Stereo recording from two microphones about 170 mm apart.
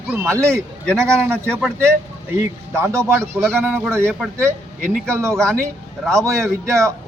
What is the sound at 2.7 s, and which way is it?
A man's voice, 15° right (ahead or behind).